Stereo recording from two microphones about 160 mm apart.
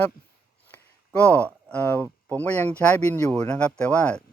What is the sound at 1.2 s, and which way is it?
Speech, 10° left (ahead or behind).